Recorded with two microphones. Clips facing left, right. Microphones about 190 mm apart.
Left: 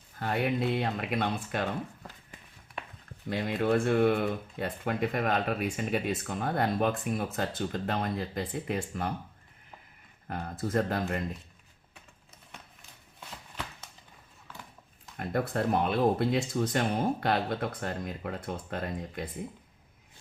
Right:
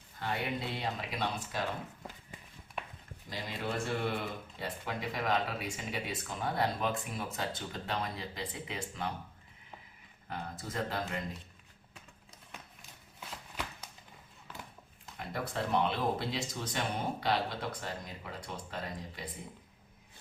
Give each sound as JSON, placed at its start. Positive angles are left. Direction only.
{"t": 0.2, "sound": "speech", "side_deg": 55}
{"t": 3.2, "sound": "speech", "side_deg": 60}
{"t": 10.2, "sound": "speech", "side_deg": 50}
{"t": 15.2, "sound": "speech", "side_deg": 50}